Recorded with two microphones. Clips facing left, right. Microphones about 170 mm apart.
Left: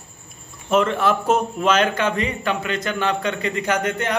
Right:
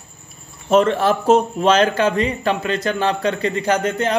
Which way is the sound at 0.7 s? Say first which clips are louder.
Right 3 dB; 35° right (ahead or behind).